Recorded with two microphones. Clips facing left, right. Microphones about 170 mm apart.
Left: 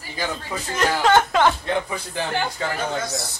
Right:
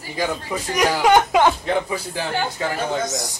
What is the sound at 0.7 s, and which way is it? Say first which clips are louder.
Speech: right 2 dB; 15° right (ahead or behind).